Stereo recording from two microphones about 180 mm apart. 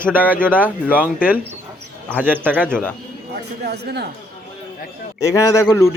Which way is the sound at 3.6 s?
65° right (ahead or behind).